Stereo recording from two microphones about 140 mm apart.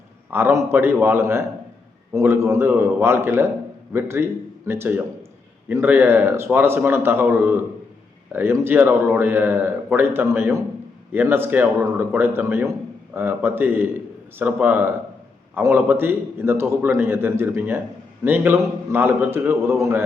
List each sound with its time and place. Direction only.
0.3 s a man's voice: 15° right (ahead or behind)